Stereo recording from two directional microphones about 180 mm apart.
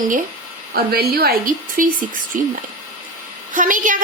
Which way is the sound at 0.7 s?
60° right (ahead or behind).